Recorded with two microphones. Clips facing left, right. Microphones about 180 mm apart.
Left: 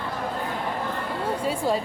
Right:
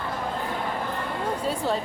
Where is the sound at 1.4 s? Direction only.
10° left (ahead or behind).